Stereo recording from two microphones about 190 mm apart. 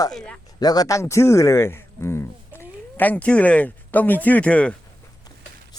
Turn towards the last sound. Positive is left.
turn(degrees=5)  # may be behind; listen again after turning